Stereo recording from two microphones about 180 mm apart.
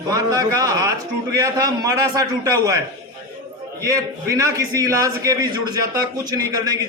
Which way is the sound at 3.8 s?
20° right (ahead or behind).